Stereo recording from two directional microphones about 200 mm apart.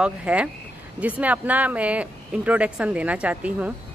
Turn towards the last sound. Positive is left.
turn(degrees=-5)  # may be behind; listen again after turning